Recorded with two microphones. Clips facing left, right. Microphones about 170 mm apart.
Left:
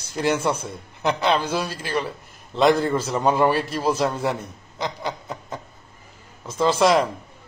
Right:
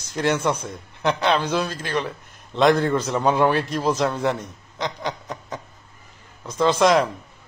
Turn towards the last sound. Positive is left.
turn(degrees=5)  # may be behind; listen again after turning